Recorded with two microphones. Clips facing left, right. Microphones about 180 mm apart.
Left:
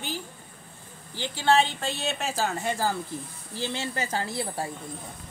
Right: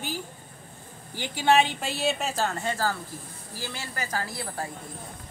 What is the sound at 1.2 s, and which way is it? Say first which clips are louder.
A woman's voice: right 1 dB; 15° right (ahead or behind).